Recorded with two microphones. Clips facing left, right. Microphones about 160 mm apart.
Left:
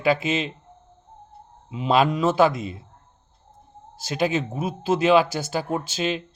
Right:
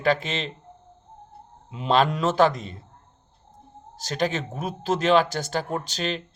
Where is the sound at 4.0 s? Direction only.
5° left (ahead or behind).